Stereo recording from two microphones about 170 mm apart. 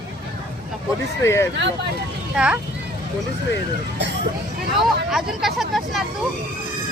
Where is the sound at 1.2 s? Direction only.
15° left (ahead or behind).